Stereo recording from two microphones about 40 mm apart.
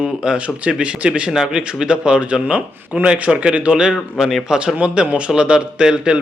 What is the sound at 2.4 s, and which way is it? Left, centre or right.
A man's voice, right.